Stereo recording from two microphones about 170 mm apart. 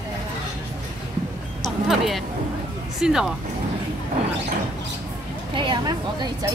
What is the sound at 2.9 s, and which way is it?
Speech, 5° right (ahead or behind).